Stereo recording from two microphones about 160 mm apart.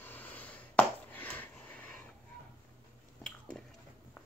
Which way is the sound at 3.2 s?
5° left (ahead or behind).